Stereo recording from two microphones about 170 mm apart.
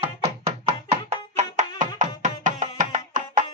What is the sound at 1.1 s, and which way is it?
Music, 45° right (ahead or behind).